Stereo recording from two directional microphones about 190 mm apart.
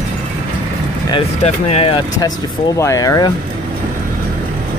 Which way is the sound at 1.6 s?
30° left (ahead or behind).